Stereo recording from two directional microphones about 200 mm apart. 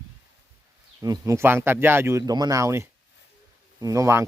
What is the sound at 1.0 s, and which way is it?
Speech, 20° right (ahead or behind).